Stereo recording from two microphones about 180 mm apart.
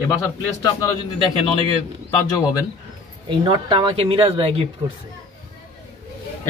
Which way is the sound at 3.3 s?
25° right (ahead or behind).